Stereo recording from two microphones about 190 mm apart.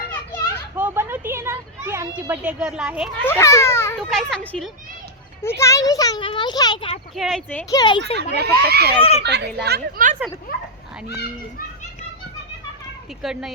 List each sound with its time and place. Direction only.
0.1 s children playing: 10° left (ahead or behind)
0.8 s a sound: 10° right (ahead or behind)
3.2 s a child's voice: 15° left (ahead or behind)
4.1 s a woman's voice: 5° left (ahead or behind); by 6.9 s 20° left (ahead or behind)
7.2 s a woman's voice: centre (ahead or behind)
7.7 s speech: 25° left (ahead or behind)
8.4 s speech: 55° right (ahead or behind)
9.0 s a child's voice: 30° left (ahead or behind)
9.6 s speech: 60° right (ahead or behind)
13.2 s a woman's voice: centre (ahead or behind)